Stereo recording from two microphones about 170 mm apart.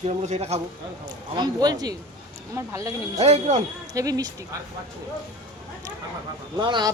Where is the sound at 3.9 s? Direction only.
20° right (ahead or behind).